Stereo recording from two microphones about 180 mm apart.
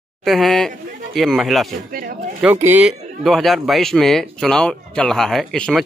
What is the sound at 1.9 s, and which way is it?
Speech, 50° right (ahead or behind).